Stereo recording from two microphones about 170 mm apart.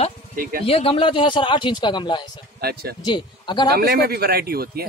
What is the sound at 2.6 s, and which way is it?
Speech, 65° right (ahead or behind).